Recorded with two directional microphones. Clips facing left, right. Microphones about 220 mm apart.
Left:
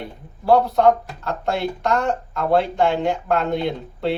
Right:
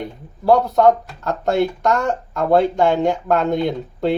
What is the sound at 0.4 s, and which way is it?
Speech, 45° right (ahead or behind).